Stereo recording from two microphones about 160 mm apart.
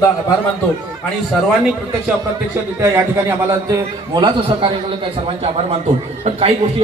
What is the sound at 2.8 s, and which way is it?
A man's voice, 15° right (ahead or behind).